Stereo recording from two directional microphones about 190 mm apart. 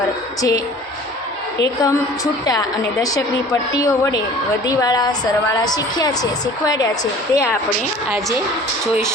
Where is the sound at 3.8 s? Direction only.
15° left (ahead or behind).